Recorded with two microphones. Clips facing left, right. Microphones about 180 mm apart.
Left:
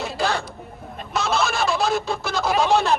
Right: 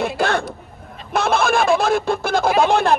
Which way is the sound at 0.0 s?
55° right (ahead or behind).